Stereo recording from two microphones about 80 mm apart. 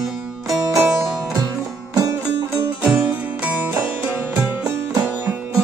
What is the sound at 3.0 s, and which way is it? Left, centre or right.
Music, centre.